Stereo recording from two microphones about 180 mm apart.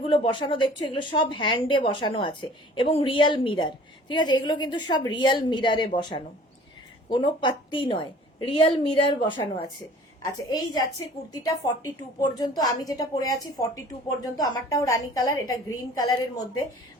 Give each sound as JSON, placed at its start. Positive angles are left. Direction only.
{"t": 0.0, "sound": "a woman's voice", "side_deg": 30}